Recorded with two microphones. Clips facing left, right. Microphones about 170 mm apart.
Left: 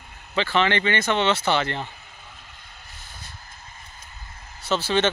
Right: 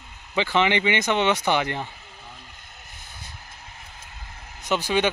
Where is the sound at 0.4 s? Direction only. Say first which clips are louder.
Even; 15° right (ahead or behind).